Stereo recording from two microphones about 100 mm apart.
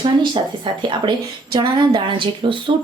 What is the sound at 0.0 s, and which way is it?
Speech, 55° right (ahead or behind).